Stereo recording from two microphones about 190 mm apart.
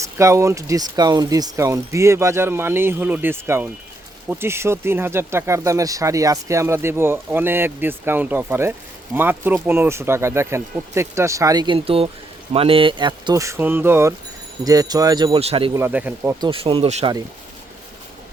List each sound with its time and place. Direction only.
0.0 s speech: 15° right (ahead or behind); by 15.7 s 30° right (ahead or behind)
15.7 s speech: 10° right (ahead or behind)
16.4 s speech: 30° right (ahead or behind)